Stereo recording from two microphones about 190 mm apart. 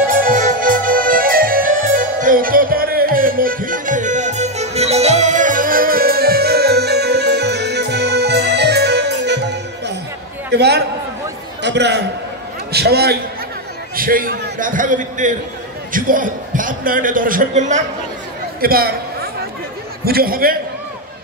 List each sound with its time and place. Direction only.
0.0 s accordion: 45° right (ahead or behind); by 9.9 s 65° right (ahead or behind)
10.5 s a sound: 60° right (ahead or behind)
11.6 s a man's voice: 65° right (ahead or behind); by 17.8 s 40° right (ahead or behind)
18.6 s a man's voice: 50° right (ahead or behind)
20.1 s a man's voice: 50° right (ahead or behind)